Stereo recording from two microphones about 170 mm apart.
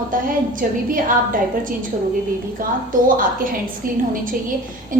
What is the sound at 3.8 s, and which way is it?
Speech, 55° right (ahead or behind).